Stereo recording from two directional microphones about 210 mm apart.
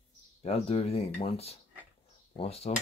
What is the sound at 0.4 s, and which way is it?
Speech, 30° left (ahead or behind).